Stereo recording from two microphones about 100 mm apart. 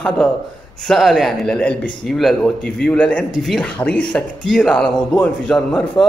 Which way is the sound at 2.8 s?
10° left (ahead or behind).